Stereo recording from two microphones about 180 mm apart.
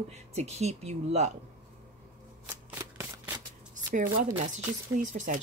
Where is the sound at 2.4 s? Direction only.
15° right (ahead or behind).